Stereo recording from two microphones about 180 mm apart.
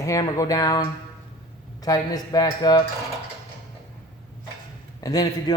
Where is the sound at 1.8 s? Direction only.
20° left (ahead or behind).